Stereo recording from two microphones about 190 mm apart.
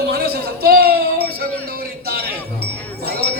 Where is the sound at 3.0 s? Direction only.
55° right (ahead or behind).